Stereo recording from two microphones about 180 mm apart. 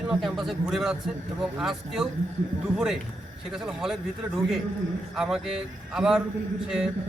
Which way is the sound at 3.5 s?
Centre (ahead or behind).